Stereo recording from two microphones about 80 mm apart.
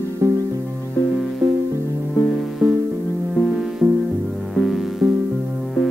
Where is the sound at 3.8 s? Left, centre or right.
Right.